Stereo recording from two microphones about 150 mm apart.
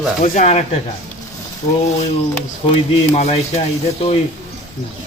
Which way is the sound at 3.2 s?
45° left (ahead or behind).